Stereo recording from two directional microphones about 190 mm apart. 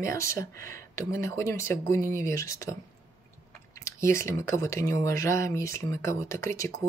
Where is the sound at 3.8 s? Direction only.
15° left (ahead or behind).